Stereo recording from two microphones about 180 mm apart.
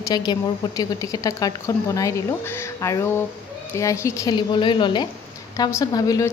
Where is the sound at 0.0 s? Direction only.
20° left (ahead or behind).